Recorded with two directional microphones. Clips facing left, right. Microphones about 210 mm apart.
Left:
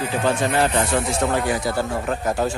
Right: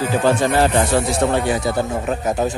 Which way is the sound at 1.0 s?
25° right (ahead or behind).